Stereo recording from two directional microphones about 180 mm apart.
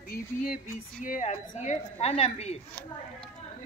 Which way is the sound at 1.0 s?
45° left (ahead or behind).